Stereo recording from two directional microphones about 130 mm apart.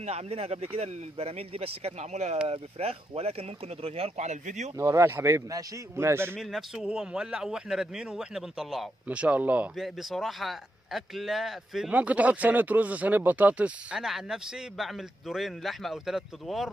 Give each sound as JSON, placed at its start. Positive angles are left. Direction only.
{"t": 0.0, "sound": "speech", "side_deg": -55}
{"t": 4.7, "sound": "a man's voice", "side_deg": -20}
{"t": 6.3, "sound": "speech", "side_deg": 0}
{"t": 9.8, "sound": "speech", "side_deg": 0}